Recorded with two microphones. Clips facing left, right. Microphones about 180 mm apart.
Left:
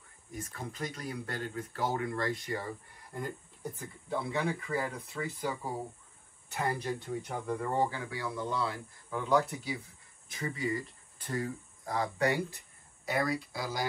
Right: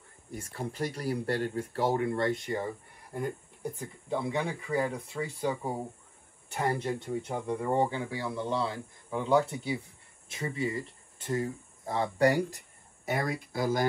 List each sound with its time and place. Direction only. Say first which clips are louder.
0.3 s speech: right 4 dB; 30° right (ahead or behind)
13.3 s speech: right 5 dB; 50° right (ahead or behind)